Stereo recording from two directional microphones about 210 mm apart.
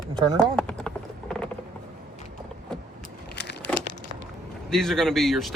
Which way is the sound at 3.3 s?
55° left (ahead or behind).